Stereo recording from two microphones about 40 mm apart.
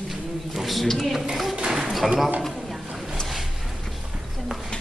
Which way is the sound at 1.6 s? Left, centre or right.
Centre.